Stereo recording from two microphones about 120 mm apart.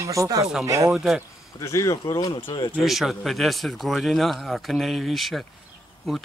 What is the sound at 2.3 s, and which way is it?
Speech, 45° left (ahead or behind).